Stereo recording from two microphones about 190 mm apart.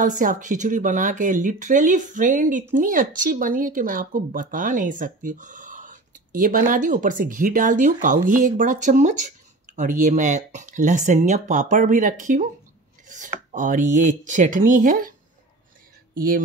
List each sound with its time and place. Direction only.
0.0 s speech: 45° right (ahead or behind)
13.5 s speech: 40° right (ahead or behind)
16.2 s speech: 50° right (ahead or behind)